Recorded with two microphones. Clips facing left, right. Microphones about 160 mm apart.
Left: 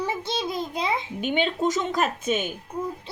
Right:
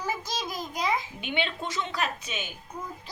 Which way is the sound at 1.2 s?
40° left (ahead or behind).